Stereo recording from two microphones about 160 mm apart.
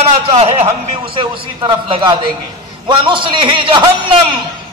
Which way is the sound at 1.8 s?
35° right (ahead or behind).